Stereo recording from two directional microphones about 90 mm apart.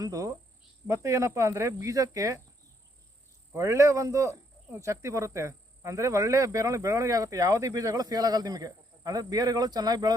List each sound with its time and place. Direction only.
0.0 s speech: 40° right (ahead or behind)
3.5 s speech: 35° right (ahead or behind)